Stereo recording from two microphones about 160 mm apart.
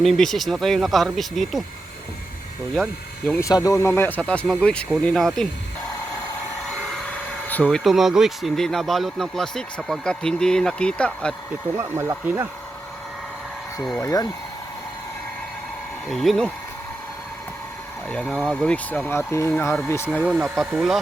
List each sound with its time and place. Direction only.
0.0 s speech: centre (ahead or behind)
2.7 s speech: centre (ahead or behind)
3.3 s speech: 20° left (ahead or behind); by 5.5 s 5° left (ahead or behind)
6.9 s speech: 5° left (ahead or behind)
11.8 s speech: 15° right (ahead or behind)
14.0 s speech: 20° left (ahead or behind)
16.0 s speech: centre (ahead or behind)
18.1 s speech: 5° left (ahead or behind)
20.2 s speech: 5° right (ahead or behind)